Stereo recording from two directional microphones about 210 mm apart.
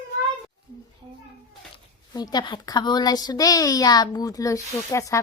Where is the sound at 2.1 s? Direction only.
20° left (ahead or behind).